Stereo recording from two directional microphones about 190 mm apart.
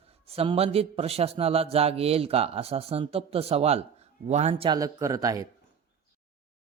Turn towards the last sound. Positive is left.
turn(degrees=-20)  # may be behind; listen again after turning